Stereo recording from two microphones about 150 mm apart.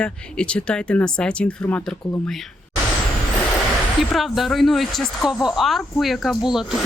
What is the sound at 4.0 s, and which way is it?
Speech, centre (ahead or behind).